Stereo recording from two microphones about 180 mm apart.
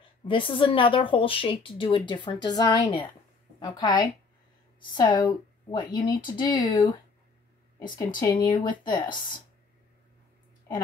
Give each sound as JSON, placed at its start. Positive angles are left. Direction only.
{"t": 0.3, "sound": "speech", "side_deg": 30}